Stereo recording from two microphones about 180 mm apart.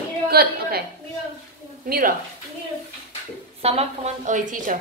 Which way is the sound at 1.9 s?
55° right (ahead or behind).